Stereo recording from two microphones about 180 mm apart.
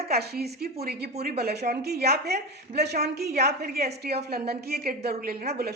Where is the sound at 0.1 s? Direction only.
60° right (ahead or behind).